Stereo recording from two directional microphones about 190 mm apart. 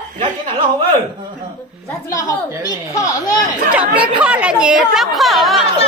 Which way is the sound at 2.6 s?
20° left (ahead or behind).